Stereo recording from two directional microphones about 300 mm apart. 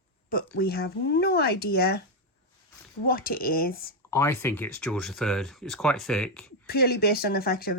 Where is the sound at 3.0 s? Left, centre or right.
Left.